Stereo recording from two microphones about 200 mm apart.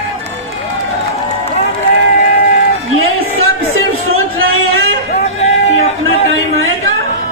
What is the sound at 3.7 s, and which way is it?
Music, 90° right.